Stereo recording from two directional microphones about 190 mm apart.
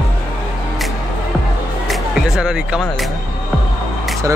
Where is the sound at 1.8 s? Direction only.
5° right (ahead or behind).